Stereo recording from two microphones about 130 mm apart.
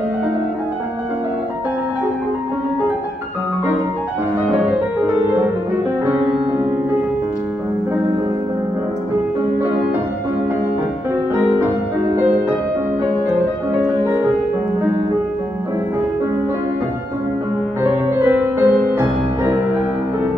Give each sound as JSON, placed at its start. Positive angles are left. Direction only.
{"t": 18.2, "sound": "music", "side_deg": -20}